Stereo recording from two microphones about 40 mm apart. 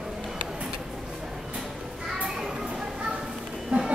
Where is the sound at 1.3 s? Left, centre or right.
Centre.